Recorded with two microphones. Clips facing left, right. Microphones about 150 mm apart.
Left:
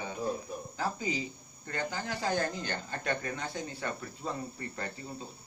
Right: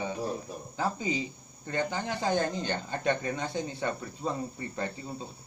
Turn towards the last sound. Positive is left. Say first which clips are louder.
# right 4 dB
turn(degrees=-25)  # may be behind; listen again after turning